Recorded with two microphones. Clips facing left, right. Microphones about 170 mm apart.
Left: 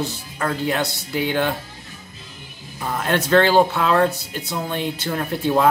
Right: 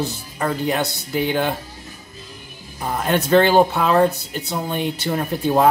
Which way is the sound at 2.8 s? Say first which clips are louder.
Right 1 dB; 10° right (ahead or behind).